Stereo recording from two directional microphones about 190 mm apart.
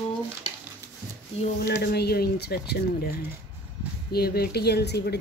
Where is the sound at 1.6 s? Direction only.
55° left (ahead or behind).